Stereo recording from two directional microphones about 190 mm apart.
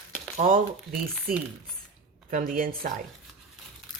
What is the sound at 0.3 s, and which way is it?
Speech, 45° right (ahead or behind).